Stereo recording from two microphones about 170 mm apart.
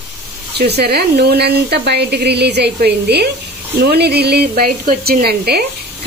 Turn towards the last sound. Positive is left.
turn(degrees=-70)  # may be behind; listen again after turning